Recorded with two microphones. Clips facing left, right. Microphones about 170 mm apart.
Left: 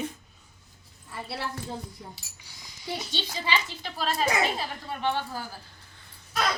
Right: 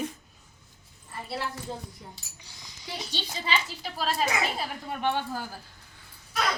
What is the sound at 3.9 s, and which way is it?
A woman's voice, 5° right (ahead or behind).